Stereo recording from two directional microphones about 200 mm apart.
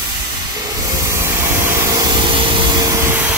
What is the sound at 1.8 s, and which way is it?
Vacuum cleaner, 15° right (ahead or behind).